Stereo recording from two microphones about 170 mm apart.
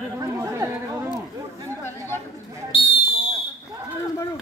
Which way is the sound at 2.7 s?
30° left (ahead or behind).